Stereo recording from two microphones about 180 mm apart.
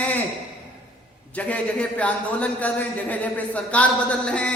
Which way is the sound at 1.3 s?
10° left (ahead or behind).